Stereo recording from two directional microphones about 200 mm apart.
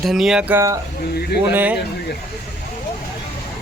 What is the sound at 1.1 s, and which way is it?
Speech, 55° left (ahead or behind).